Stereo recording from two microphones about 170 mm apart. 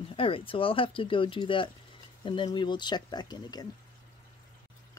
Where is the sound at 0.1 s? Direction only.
30° left (ahead or behind).